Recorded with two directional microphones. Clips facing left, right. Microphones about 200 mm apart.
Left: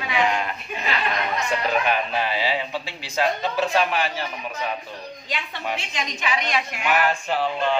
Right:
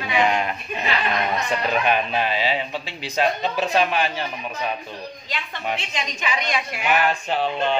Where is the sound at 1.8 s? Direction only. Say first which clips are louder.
Right 2 dB; 20° right (ahead or behind).